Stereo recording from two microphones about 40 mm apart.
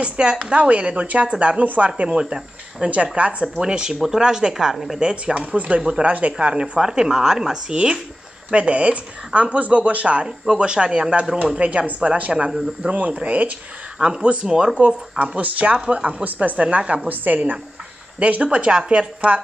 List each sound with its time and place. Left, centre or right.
0.0 s speech: right
2.0 s speech: right
2.9 s speech: right; by 4.7 s centre
4.7 s a woman's voice: centre
5.0 s speech: right
5.8 s speech: centre
6.0 s speech: right
6.4 s speech: right
10.2 s speech: centre; by 13.5 s right
13.9 s speech: right
17.1 s a woman's voice: right
18.2 s speech: right